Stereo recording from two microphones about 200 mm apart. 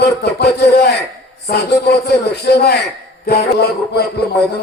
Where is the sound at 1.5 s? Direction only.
55° left (ahead or behind).